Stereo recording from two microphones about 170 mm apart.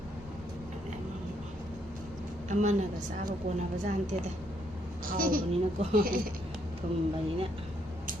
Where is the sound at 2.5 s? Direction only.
45° right (ahead or behind).